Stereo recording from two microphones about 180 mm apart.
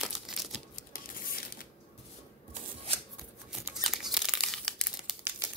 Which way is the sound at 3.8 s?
Centre (ahead or behind).